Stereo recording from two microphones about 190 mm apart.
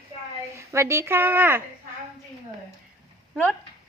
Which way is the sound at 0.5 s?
15° right (ahead or behind).